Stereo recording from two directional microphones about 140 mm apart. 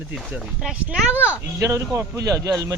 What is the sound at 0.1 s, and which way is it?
Speech, 5° right (ahead or behind).